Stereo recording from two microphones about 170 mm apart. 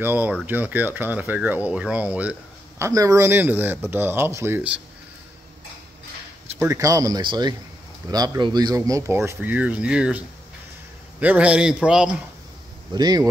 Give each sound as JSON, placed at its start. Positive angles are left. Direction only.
{"t": 0.0, "sound": "speech", "side_deg": -10}
{"t": 2.8, "sound": "speech", "side_deg": -20}
{"t": 6.6, "sound": "a man's voice", "side_deg": -15}
{"t": 12.9, "sound": "speech", "side_deg": -25}